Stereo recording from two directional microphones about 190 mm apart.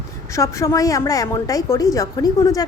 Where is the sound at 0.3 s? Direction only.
15° left (ahead or behind).